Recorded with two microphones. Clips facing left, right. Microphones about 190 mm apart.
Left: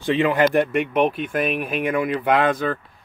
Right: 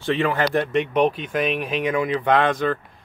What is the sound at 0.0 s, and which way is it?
Speech, 15° left (ahead or behind).